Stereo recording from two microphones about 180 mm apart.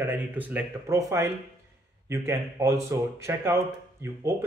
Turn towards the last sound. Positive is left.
turn(degrees=-15)  # may be behind; listen again after turning